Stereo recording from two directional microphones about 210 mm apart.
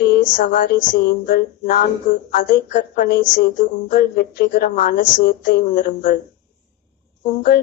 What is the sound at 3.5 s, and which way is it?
Speech, 40° left (ahead or behind).